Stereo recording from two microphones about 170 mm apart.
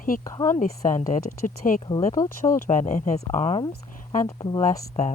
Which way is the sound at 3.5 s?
30° left (ahead or behind).